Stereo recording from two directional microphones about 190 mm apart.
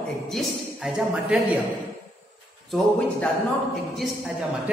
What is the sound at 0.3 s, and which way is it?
Speech, centre (ahead or behind).